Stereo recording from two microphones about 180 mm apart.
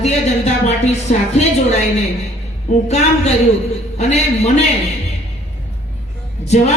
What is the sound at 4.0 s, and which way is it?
Speech, 40° left (ahead or behind).